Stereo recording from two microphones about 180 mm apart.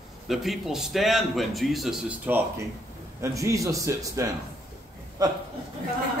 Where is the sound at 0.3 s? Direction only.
Centre (ahead or behind); by 5.4 s 20° right (ahead or behind).